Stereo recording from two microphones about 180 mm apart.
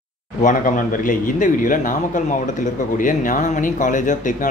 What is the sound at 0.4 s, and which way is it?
Speech, 45° left (ahead or behind).